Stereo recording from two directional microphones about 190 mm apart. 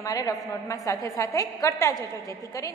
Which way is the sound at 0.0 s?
20° left (ahead or behind).